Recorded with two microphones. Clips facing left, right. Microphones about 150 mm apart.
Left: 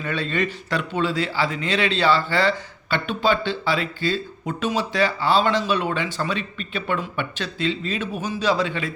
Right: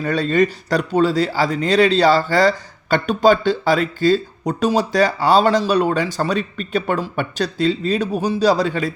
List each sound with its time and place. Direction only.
0.0 s a man's voice: 40° right (ahead or behind)